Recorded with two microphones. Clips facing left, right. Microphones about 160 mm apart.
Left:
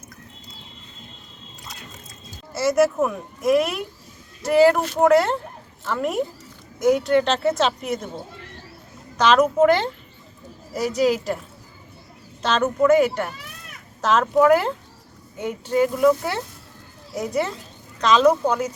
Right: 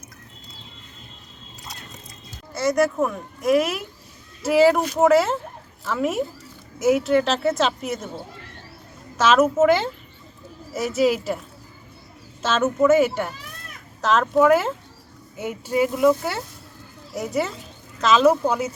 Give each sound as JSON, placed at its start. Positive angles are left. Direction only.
{"t": 2.5, "sound": "speech", "side_deg": 5}